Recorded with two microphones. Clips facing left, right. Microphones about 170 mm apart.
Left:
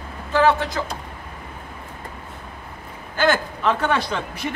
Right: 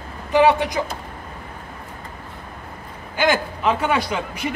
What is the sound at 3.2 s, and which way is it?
A man's voice, 10° right (ahead or behind).